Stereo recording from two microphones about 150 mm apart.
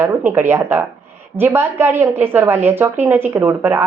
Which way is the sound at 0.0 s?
15° right (ahead or behind).